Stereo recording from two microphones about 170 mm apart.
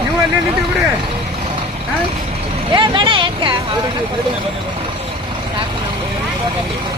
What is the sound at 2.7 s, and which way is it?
Speech, 30° right (ahead or behind).